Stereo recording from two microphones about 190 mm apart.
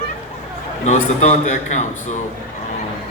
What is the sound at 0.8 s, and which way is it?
A man's voice, 40° left (ahead or behind).